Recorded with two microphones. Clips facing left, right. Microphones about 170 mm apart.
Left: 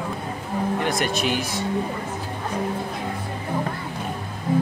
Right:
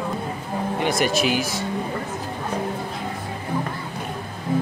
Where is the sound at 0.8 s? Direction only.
5° right (ahead or behind).